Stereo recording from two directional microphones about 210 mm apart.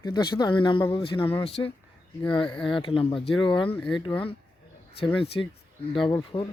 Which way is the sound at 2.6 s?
25° left (ahead or behind).